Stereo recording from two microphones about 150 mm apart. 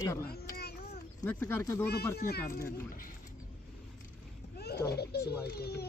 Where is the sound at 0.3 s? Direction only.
90° left.